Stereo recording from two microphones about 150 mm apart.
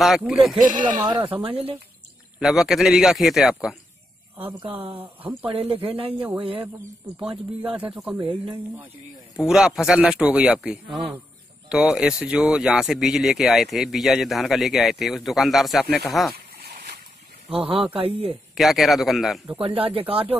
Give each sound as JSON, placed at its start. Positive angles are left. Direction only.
{"t": 0.2, "sound": "speech", "side_deg": 0}
{"t": 0.6, "sound": "speech", "side_deg": -60}
{"t": 1.2, "sound": "speech", "side_deg": -40}
{"t": 2.3, "sound": "speech", "side_deg": 0}
{"t": 4.7, "sound": "speech", "side_deg": -35}
{"t": 7.6, "sound": "speech", "side_deg": -10}
{"t": 9.4, "sound": "speech", "side_deg": -5}
{"t": 16.3, "sound": "a sound", "side_deg": -90}
{"t": 17.5, "sound": "speech", "side_deg": -40}
{"t": 18.5, "sound": "speech", "side_deg": 0}
{"t": 19.6, "sound": "speech", "side_deg": -40}